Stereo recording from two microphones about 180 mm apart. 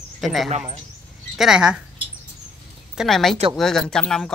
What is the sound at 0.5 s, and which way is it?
Speech, 40° right (ahead or behind).